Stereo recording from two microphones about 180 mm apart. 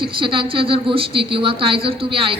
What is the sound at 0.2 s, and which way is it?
A woman's voice, 30° right (ahead or behind).